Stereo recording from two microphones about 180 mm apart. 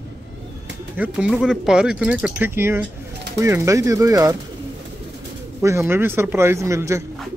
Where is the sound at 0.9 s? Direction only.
5° right (ahead or behind).